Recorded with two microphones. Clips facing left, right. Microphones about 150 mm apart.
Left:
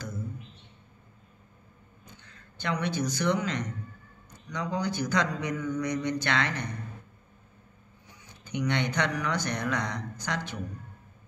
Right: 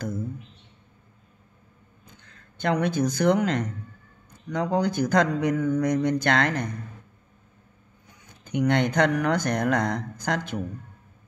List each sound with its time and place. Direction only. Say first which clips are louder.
2.1 s a man's voice: even; 50° right (ahead or behind)
8.1 s speech: right 5 dB; 50° right (ahead or behind)